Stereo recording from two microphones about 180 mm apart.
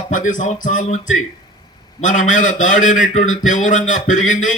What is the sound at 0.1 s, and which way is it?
Speech, 45° left (ahead or behind).